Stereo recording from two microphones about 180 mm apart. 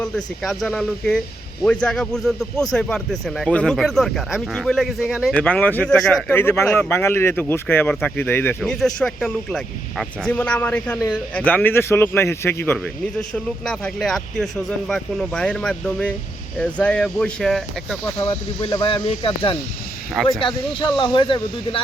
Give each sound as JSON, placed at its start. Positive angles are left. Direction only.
{"t": 0.0, "sound": "a man's voice", "side_deg": 0}
{"t": 18.2, "sound": "speech", "side_deg": 20}